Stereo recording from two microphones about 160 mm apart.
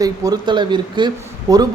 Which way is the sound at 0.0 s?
25° right (ahead or behind).